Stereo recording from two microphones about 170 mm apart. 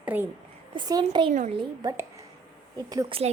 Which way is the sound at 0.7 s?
25° right (ahead or behind).